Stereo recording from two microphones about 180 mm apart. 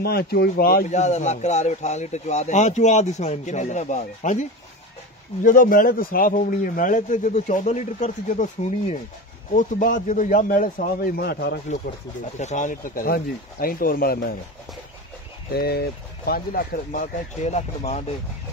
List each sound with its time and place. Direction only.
0.0 s speech: 60° left (ahead or behind)
0.8 s a man's voice: 40° left (ahead or behind); by 11.6 s 65° left (ahead or behind)
12.4 s a man's voice: 40° left (ahead or behind)
15.5 s a man's voice: 60° left (ahead or behind); by 18.0 s 35° left (ahead or behind)